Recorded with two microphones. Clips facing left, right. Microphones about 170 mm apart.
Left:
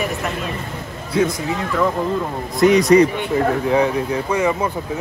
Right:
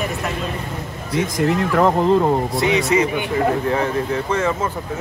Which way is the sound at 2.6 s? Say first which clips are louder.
Left 9 dB; 40° left (ahead or behind).